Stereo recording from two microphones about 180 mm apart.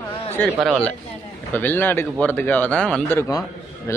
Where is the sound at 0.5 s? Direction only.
Centre (ahead or behind).